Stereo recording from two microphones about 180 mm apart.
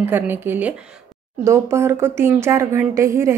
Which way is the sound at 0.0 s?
10° right (ahead or behind).